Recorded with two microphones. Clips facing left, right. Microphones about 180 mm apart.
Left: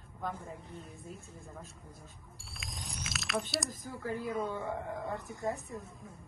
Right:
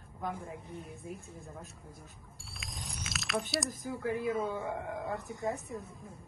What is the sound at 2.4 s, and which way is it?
Mechanisms, centre (ahead or behind).